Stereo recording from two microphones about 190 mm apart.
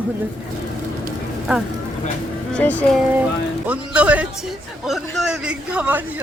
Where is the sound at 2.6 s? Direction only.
5° left (ahead or behind).